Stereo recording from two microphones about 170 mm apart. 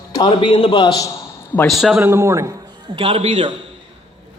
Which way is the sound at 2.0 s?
15° right (ahead or behind).